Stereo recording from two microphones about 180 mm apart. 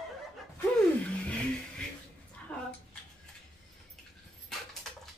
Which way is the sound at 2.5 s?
5° left (ahead or behind).